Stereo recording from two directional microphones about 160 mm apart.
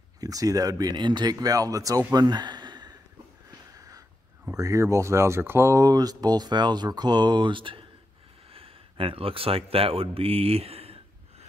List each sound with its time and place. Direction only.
0.2 s speech: 20° right (ahead or behind)
2.1 s a sound: 25° right (ahead or behind)
4.6 s speech: 20° right (ahead or behind); by 11.0 s 40° right (ahead or behind)